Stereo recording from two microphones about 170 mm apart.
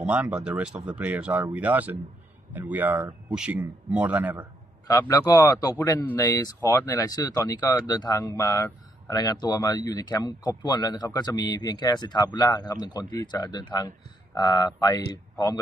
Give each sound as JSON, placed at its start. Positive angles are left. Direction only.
{"t": 0.0, "sound": "speech", "side_deg": -10}
{"t": 4.8, "sound": "speech", "side_deg": 20}